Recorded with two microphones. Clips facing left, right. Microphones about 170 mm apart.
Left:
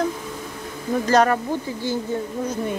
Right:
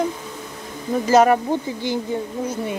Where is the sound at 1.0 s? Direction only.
10° right (ahead or behind).